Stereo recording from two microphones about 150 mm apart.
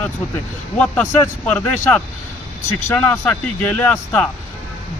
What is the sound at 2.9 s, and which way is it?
Speech, 15° left (ahead or behind).